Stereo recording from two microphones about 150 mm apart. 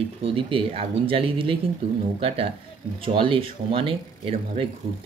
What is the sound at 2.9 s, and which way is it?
Speech, 35° right (ahead or behind).